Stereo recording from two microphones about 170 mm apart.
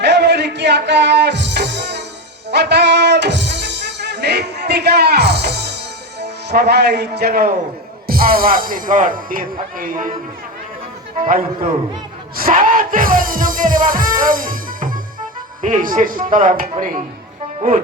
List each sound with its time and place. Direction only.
0.0 s music: 90° right; by 7.5 s 65° right (ahead or behind)
8.0 s speech: 60° right (ahead or behind)
11.2 s music: 55° right (ahead or behind)